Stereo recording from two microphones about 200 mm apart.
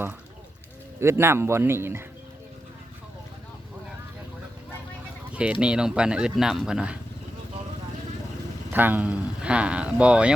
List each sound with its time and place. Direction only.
0.9 s speech: 10° right (ahead or behind)
5.3 s speech: 5° right (ahead or behind)
8.7 s speech: 10° right (ahead or behind)